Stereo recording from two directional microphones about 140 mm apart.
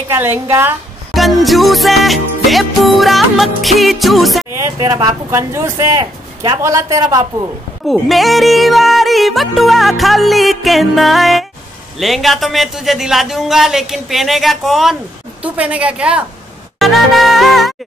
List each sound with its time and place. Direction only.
0.1 s a woman's voice: 15° right (ahead or behind)
1.1 s music: centre (ahead or behind)
4.6 s speech: 25° right (ahead or behind)
7.9 s music: centre (ahead or behind)
15.4 s a woman's voice: 10° right (ahead or behind)
16.7 s music: centre (ahead or behind)